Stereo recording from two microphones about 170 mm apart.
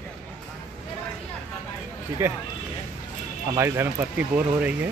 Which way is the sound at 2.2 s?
15° right (ahead or behind).